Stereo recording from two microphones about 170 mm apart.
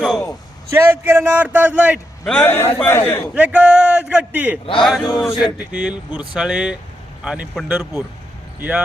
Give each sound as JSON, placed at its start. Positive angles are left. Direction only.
{"t": 0.7, "sound": "a man's voice", "side_deg": -15}
{"t": 2.2, "sound": "a man's voice", "side_deg": 5}
{"t": 3.3, "sound": "a man's voice", "side_deg": -10}
{"t": 4.6, "sound": "speech", "side_deg": 30}
{"t": 4.9, "sound": "a man's voice", "side_deg": 0}